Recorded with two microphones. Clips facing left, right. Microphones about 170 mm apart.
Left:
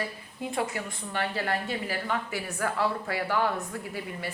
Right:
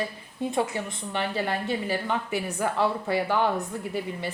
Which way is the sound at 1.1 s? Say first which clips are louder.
Right 2 dB; 20° right (ahead or behind).